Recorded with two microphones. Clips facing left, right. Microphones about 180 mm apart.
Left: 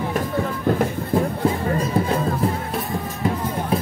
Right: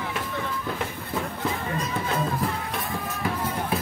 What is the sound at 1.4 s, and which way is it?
Music, 35° left (ahead or behind).